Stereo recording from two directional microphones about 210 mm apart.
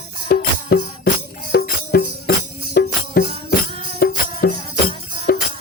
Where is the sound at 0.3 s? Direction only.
45° left (ahead or behind).